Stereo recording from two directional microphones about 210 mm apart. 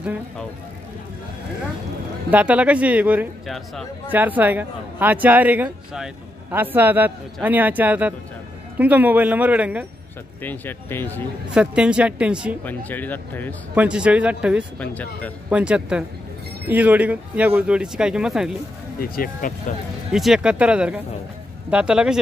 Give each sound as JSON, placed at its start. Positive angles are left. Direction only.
{"t": 2.3, "sound": "speech", "side_deg": -5}
{"t": 10.4, "sound": "speech", "side_deg": 10}
{"t": 11.5, "sound": "a woman's voice", "side_deg": -5}
{"t": 12.6, "sound": "speech", "side_deg": 10}
{"t": 13.7, "sound": "a woman's voice", "side_deg": -5}
{"t": 14.8, "sound": "speech", "side_deg": 5}
{"t": 15.5, "sound": "a woman's voice", "side_deg": -5}
{"t": 18.9, "sound": "speech", "side_deg": 45}
{"t": 20.1, "sound": "a woman's voice", "side_deg": 0}